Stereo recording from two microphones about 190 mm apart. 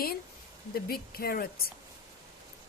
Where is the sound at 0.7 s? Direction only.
55° left (ahead or behind).